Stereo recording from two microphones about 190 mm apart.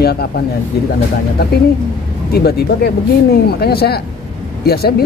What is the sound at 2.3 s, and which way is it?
Speech, 55° left (ahead or behind).